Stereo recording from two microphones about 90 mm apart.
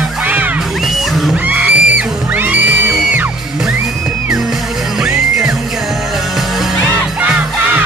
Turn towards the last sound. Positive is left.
turn(degrees=-15)  # may be behind; listen again after turning